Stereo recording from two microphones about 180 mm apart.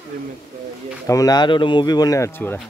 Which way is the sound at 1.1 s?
20° left (ahead or behind).